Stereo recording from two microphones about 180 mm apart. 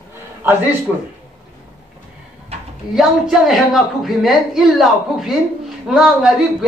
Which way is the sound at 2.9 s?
Centre (ahead or behind).